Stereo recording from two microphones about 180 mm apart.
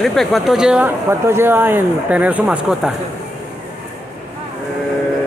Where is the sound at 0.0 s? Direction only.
Centre (ahead or behind).